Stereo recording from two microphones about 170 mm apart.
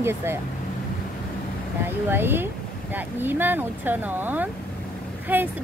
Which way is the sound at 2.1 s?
10° right (ahead or behind).